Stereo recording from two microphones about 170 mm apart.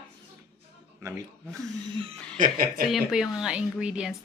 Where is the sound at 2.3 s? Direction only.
50° right (ahead or behind).